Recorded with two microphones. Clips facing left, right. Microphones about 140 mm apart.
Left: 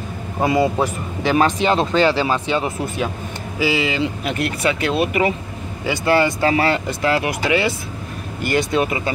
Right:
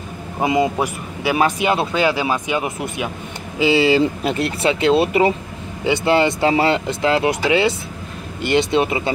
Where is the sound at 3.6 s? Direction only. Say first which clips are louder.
Right 5 dB; 30° right (ahead or behind).